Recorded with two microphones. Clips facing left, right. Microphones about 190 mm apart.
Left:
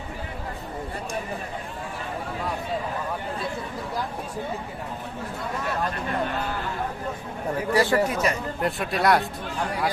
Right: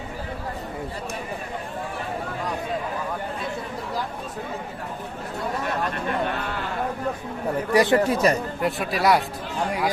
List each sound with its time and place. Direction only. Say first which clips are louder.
7.7 s speech: right 3 dB; 20° right (ahead or behind); by 8.4 s 35° right (ahead or behind)
8.6 s speech: right 1 dB; centre (ahead or behind)